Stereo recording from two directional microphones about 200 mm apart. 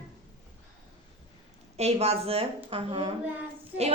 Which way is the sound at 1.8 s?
30° right (ahead or behind).